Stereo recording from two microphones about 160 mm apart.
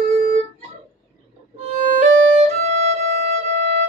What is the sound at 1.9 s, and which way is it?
Music, 45° right (ahead or behind).